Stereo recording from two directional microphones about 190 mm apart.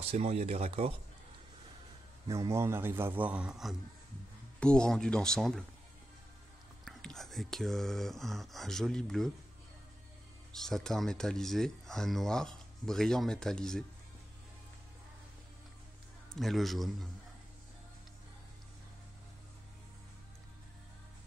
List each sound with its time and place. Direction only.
0.0 s speech: 35° right (ahead or behind)
2.2 s a man's voice: 15° right (ahead or behind); by 5.7 s 5° left (ahead or behind)
6.8 s speech: centre (ahead or behind)
10.5 s speech: centre (ahead or behind)
16.3 s speech: centre (ahead or behind)